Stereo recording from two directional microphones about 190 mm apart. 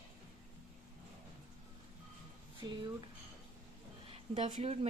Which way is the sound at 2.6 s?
20° right (ahead or behind).